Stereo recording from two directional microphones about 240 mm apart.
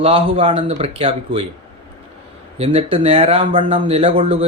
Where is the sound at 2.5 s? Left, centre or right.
Right.